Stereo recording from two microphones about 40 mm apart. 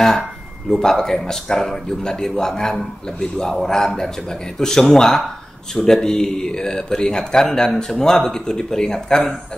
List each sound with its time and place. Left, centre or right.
0.7 s speech: centre